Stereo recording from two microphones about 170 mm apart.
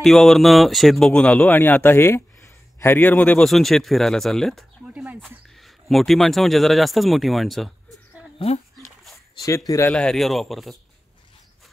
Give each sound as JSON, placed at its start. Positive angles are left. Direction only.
{"t": 0.0, "sound": "speech", "side_deg": 0}
{"t": 8.7, "sound": "a sound", "side_deg": 0}
{"t": 9.7, "sound": "speech", "side_deg": 15}
{"t": 9.9, "sound": "speech", "side_deg": 5}